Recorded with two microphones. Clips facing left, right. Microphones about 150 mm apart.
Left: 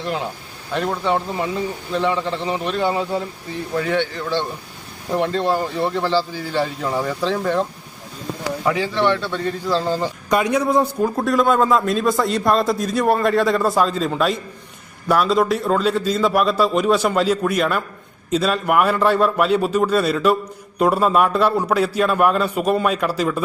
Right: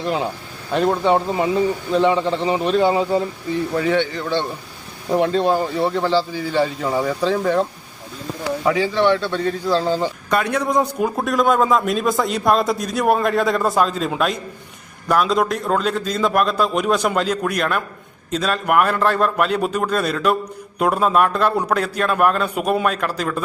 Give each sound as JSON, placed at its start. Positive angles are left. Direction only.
{"t": 0.9, "sound": "speech", "side_deg": -25}
{"t": 2.3, "sound": "a man's voice", "side_deg": -5}
{"t": 10.2, "sound": "a man's voice", "side_deg": 10}
{"t": 22.9, "sound": "speech", "side_deg": 5}